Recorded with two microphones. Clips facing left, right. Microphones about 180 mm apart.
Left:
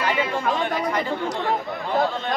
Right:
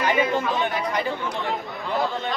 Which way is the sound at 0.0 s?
20° right (ahead or behind).